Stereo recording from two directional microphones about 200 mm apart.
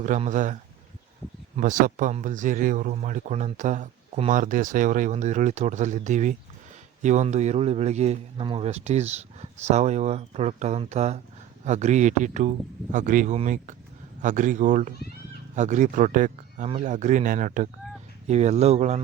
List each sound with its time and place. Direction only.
0.0 s speech: 40° right (ahead or behind)